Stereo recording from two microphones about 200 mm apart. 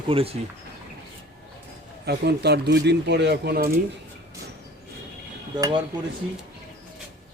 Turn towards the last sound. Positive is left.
turn(degrees=-20)  # may be behind; listen again after turning